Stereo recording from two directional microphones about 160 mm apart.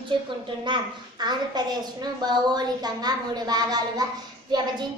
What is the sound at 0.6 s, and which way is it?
A woman's voice, 30° right (ahead or behind).